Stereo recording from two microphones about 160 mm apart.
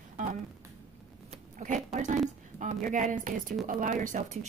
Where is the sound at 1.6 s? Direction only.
50° right (ahead or behind).